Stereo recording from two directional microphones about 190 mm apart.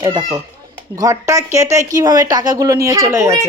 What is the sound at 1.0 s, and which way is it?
A woman's voice, 15° right (ahead or behind).